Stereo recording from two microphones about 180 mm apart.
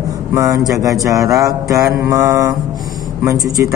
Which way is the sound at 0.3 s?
20° right (ahead or behind).